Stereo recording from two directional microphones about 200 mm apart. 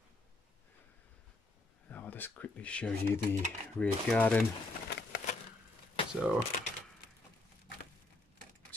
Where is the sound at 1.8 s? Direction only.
10° left (ahead or behind).